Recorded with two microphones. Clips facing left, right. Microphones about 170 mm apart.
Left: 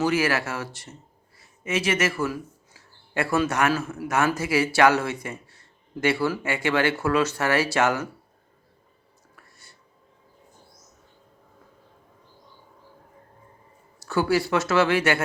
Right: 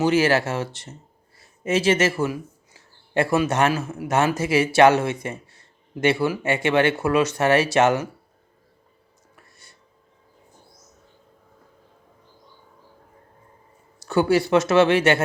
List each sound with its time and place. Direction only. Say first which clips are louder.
0.0 s speech: right 4 dB; 25° right (ahead or behind)
9.3 s whispering: right 1 dB; 20° right (ahead or behind)
14.0 s speech: right 4 dB; 20° right (ahead or behind)